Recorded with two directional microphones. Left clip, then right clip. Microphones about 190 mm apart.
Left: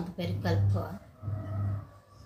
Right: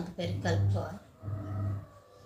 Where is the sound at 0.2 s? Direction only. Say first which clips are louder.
Even; 10° left (ahead or behind).